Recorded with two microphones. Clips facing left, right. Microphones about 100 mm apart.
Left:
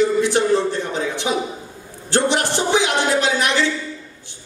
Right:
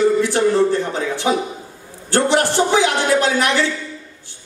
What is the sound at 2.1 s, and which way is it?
Speech, 20° left (ahead or behind).